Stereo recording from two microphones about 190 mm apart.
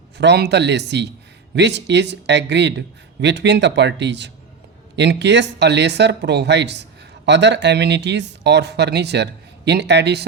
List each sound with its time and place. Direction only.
0.2 s a man's voice: 65° right (ahead or behind)